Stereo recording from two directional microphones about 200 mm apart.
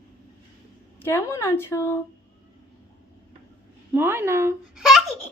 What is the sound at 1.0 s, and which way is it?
Speech, 10° left (ahead or behind).